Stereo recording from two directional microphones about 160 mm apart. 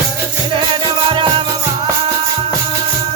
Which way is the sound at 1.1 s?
30° right (ahead or behind).